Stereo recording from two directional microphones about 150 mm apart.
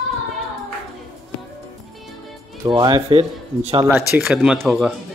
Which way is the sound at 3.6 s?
45° right (ahead or behind).